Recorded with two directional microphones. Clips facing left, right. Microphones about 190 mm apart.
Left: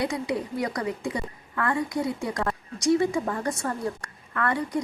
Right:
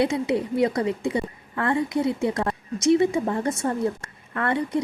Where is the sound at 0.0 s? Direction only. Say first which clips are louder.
Right 5 dB; 25° right (ahead or behind).